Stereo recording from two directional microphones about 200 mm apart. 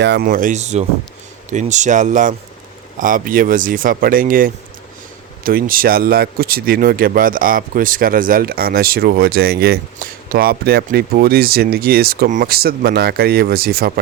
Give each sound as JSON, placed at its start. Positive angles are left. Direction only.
{"t": 0.0, "sound": "speech", "side_deg": -55}